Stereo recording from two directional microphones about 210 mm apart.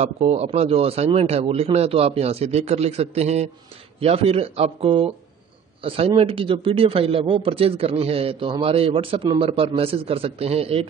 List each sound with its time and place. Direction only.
0.0 s a man's voice: 30° right (ahead or behind)